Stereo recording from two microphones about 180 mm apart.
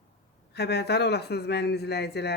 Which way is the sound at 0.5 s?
65° left (ahead or behind).